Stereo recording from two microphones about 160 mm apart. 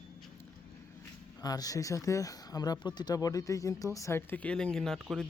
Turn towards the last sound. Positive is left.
turn(degrees=0)  # may be behind; listen again after turning